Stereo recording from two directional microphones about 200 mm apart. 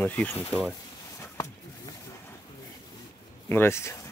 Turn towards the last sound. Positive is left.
turn(degrees=15)  # may be behind; listen again after turning